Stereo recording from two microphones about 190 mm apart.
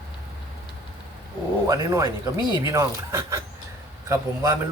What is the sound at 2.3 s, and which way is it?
Speech, 25° left (ahead or behind).